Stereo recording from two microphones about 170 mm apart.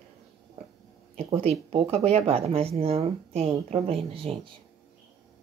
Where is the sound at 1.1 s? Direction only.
35° right (ahead or behind).